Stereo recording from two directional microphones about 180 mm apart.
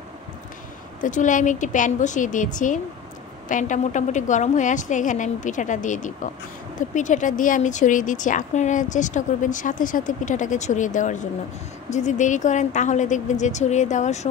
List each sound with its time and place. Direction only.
1.0 s a woman's voice: 45° left (ahead or behind)